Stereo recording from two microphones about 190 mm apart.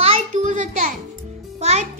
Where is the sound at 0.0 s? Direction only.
40° right (ahead or behind).